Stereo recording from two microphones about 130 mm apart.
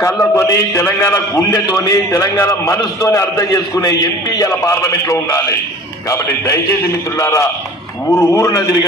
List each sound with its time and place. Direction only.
0.0 s a man's voice: 20° left (ahead or behind)